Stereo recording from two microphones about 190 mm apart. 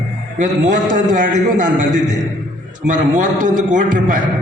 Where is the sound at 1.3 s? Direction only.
40° right (ahead or behind).